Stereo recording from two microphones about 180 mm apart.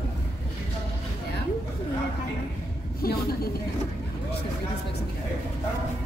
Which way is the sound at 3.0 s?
55° left (ahead or behind).